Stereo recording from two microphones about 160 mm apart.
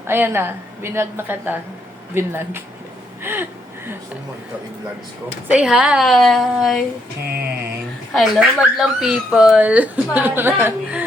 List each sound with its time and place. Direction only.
0.0 s speech: 15° right (ahead or behind)
5.5 s a woman's voice: 5° right (ahead or behind)
8.1 s speech: centre (ahead or behind)